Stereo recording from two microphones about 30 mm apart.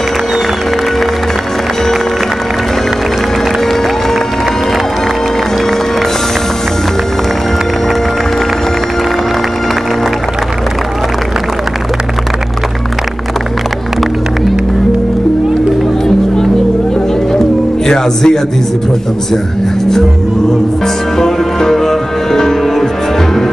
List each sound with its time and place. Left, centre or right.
17.8 s speech: centre
21.2 s music: centre